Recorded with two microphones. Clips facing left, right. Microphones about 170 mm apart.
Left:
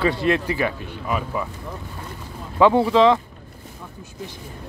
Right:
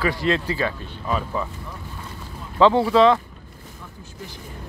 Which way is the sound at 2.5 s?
15° left (ahead or behind).